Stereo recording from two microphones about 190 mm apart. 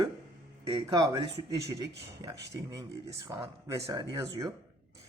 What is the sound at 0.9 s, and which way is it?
Speech, 20° right (ahead or behind).